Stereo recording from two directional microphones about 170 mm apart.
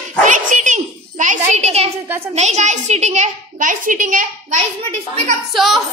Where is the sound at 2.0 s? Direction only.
10° right (ahead or behind).